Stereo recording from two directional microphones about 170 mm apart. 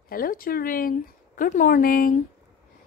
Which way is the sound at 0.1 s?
55° left (ahead or behind).